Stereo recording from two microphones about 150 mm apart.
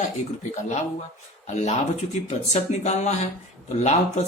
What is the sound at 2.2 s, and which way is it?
Speech, 50° left (ahead or behind).